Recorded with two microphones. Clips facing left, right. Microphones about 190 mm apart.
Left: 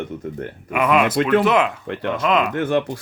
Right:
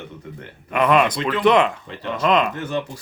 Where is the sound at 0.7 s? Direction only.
5° left (ahead or behind).